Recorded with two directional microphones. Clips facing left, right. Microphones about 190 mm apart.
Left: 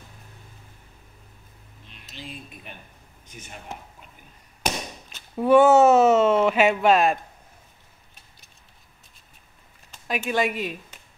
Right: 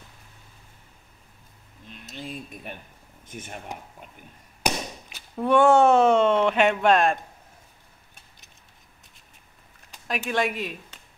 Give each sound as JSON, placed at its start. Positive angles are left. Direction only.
{"t": 1.9, "sound": "a sound", "side_deg": -45}
{"t": 3.3, "sound": "speech", "side_deg": -50}
{"t": 5.3, "sound": "speech", "side_deg": 5}
{"t": 10.0, "sound": "speech", "side_deg": 0}